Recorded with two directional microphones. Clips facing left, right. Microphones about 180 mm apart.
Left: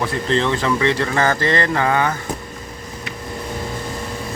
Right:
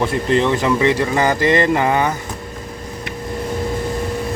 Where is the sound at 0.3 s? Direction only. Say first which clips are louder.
Right 2 dB; 15° right (ahead or behind).